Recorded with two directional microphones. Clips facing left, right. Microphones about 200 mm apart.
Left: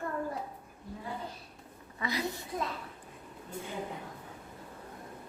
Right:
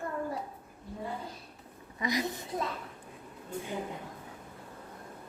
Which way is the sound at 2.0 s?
15° right (ahead or behind).